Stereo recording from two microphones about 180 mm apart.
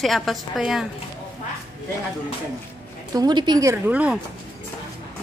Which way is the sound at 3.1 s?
25° right (ahead or behind).